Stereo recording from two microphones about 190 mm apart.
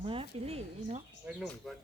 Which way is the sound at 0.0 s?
30° right (ahead or behind).